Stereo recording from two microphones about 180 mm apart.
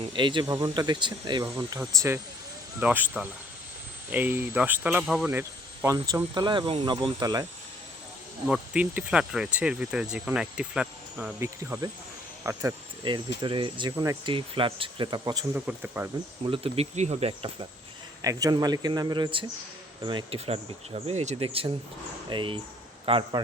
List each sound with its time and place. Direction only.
0.0 s speech: 25° right (ahead or behind)
8.4 s speech: 5° right (ahead or behind)
13.1 s speech: 25° right (ahead or behind)
13.9 s speech: 15° right (ahead or behind)
14.3 s speech: 30° right (ahead or behind)
15.5 s speech: 10° right (ahead or behind)
16.5 s speech: 35° right (ahead or behind)
18.2 s speech: 20° right (ahead or behind)